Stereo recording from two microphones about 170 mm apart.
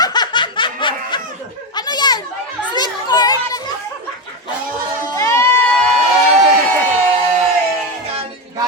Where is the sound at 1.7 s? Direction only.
25° left (ahead or behind).